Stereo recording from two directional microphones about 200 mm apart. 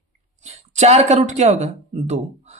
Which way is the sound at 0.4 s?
35° right (ahead or behind).